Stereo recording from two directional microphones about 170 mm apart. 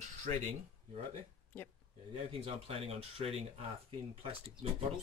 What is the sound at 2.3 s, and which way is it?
Speech, 35° right (ahead or behind).